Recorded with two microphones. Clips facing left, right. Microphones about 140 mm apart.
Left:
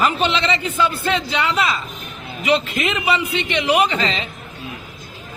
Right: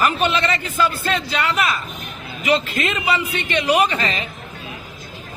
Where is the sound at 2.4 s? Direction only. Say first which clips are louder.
Left 1 dB; 20° left (ahead or behind).